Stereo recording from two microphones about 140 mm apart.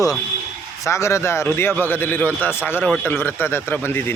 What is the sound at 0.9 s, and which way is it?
Speech, 20° left (ahead or behind).